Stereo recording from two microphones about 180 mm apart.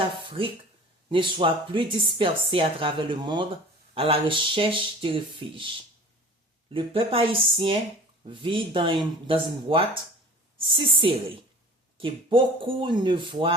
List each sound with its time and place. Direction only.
0.3 s speech: 30° right (ahead or behind)